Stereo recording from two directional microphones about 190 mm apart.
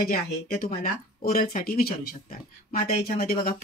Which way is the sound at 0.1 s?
45° left (ahead or behind).